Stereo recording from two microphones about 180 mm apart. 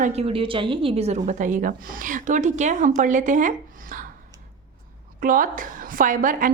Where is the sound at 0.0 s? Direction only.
35° right (ahead or behind).